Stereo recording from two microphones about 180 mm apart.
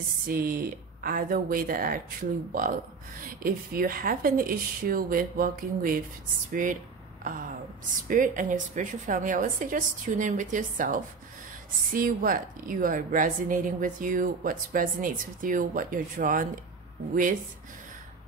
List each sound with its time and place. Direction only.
0.3 s a woman's voice: 55° right (ahead or behind)